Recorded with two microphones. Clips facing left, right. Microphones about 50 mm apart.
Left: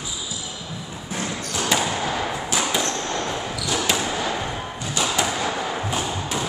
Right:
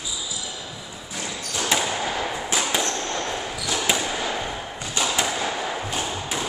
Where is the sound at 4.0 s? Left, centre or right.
Centre.